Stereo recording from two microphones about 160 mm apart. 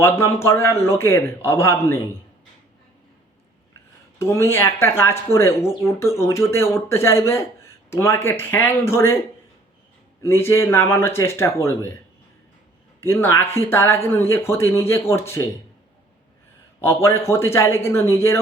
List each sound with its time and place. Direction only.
0.0 s speech: 15° left (ahead or behind)
4.2 s speech: 15° left (ahead or behind)
10.2 s speech: 15° left (ahead or behind)
13.0 s speech: 15° left (ahead or behind)
16.8 s speech: 15° left (ahead or behind)